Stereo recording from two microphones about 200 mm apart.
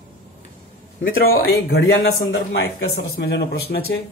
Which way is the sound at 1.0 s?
45° left (ahead or behind).